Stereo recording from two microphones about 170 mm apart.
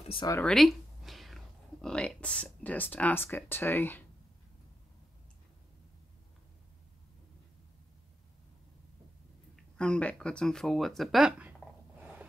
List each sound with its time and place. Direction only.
0.1 s speech: 25° left (ahead or behind)
0.4 s speech: 5° left (ahead or behind)
9.6 s a sound: 5° left (ahead or behind); by 12.3 s 10° right (ahead or behind)